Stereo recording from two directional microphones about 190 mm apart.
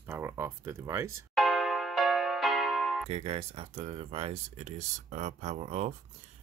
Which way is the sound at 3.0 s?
30° right (ahead or behind).